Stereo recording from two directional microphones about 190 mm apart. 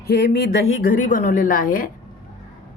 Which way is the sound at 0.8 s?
45° left (ahead or behind).